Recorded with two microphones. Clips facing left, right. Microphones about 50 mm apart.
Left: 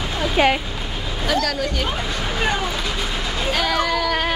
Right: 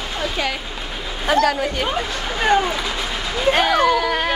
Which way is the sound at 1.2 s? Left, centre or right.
Right.